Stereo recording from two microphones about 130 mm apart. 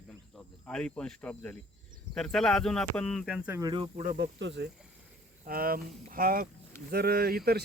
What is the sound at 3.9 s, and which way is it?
Speech, 90° right.